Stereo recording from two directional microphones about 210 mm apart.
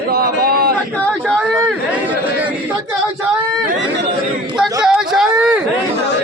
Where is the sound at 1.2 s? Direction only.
Centre (ahead or behind).